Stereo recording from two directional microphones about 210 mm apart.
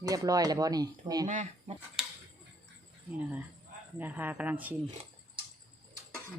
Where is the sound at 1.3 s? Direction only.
35° right (ahead or behind).